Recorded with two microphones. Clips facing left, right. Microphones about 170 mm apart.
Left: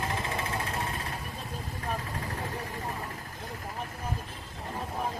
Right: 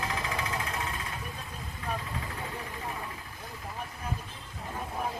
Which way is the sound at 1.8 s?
40° left (ahead or behind).